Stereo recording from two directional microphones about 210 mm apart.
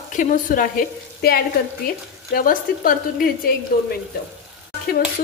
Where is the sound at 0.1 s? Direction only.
40° left (ahead or behind).